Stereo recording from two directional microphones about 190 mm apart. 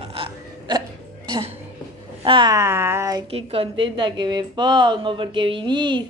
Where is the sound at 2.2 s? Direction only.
25° right (ahead or behind).